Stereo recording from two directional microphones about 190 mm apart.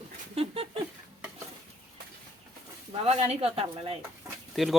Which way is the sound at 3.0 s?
30° right (ahead or behind).